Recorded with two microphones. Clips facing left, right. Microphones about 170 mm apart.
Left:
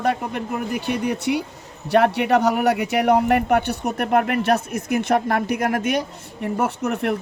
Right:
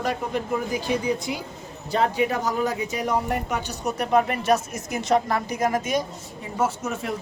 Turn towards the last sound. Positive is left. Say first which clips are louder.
# left 4 dB
turn(degrees=65)  # may be behind; listen again after turning